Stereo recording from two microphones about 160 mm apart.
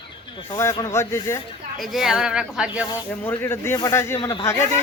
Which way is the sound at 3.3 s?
15° left (ahead or behind).